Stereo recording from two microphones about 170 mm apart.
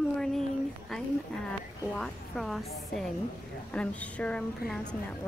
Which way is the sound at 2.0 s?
Centre (ahead or behind).